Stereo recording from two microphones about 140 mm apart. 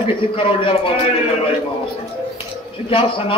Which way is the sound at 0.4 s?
40° left (ahead or behind).